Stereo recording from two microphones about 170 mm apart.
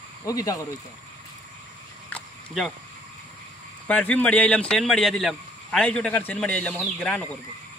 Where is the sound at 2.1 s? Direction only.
Centre (ahead or behind).